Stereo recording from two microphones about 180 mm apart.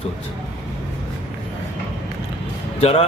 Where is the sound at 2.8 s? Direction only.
35° left (ahead or behind).